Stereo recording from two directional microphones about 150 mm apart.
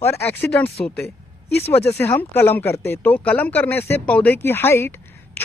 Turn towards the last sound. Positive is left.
turn(degrees=15)  # may be behind; listen again after turning